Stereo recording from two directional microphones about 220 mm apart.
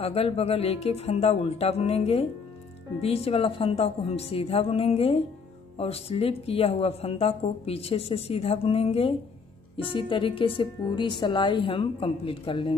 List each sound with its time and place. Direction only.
0.0 s speech: 25° left (ahead or behind)